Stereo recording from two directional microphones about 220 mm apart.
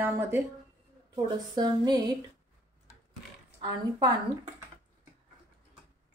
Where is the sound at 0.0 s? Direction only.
10° right (ahead or behind).